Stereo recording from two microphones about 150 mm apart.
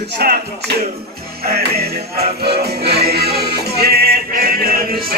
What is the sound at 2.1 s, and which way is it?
Music, 90° right.